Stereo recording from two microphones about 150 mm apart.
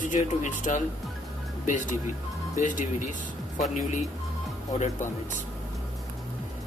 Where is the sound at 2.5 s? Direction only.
60° left (ahead or behind).